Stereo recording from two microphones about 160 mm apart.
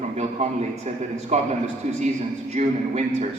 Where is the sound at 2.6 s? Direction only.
50° right (ahead or behind).